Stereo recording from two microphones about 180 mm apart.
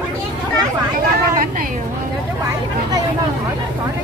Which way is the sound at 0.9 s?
50° right (ahead or behind).